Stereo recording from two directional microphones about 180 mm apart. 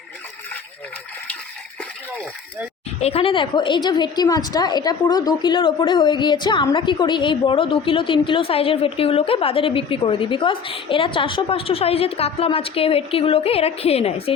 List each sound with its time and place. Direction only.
3.0 s a woman's voice: 30° left (ahead or behind)